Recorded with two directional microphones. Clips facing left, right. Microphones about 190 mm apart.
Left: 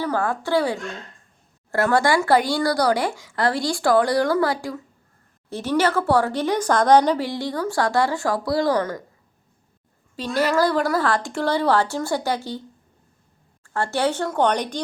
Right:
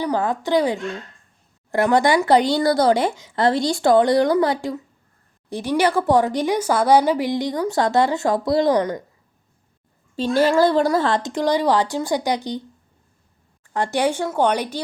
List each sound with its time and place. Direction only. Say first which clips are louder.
0.0 s speech: right 2 dB; 15° right (ahead or behind)
10.2 s speech: right 4 dB; 25° right (ahead or behind)
13.7 s speech: right 2 dB; 15° right (ahead or behind)